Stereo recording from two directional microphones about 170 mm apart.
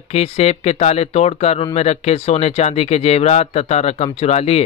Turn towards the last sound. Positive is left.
turn(degrees=40)  # may be behind; listen again after turning